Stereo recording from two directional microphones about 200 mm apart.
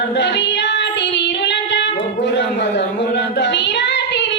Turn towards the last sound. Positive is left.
turn(degrees=60)  # may be behind; listen again after turning